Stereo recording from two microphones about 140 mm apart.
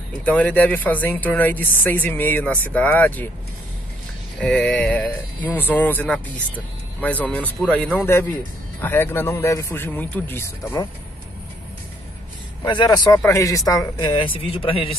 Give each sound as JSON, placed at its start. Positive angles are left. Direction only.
{"t": 0.2, "sound": "speech", "side_deg": 10}
{"t": 4.4, "sound": "speech", "side_deg": 5}
{"t": 12.6, "sound": "speech", "side_deg": 30}
{"t": 13.1, "sound": "speech", "side_deg": 20}